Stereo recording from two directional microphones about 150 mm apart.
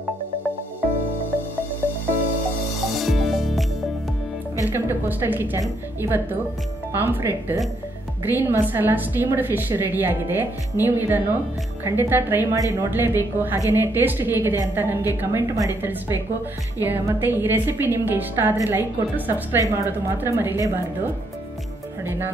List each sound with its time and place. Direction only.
3.0 s music: centre (ahead or behind)
4.6 s a woman's voice: 15° right (ahead or behind)